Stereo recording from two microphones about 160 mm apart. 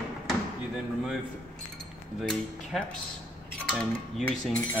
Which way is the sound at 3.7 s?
5° left (ahead or behind).